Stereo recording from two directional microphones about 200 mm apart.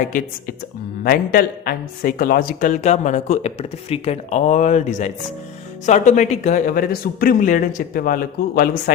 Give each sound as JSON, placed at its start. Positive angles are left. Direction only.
{"t": 0.0, "sound": "speech", "side_deg": 40}